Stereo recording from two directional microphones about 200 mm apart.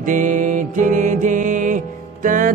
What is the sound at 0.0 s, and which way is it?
Music, 40° right (ahead or behind).